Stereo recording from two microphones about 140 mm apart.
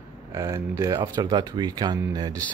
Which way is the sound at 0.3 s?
25° right (ahead or behind).